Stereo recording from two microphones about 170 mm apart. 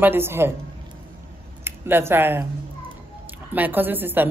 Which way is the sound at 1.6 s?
15° right (ahead or behind).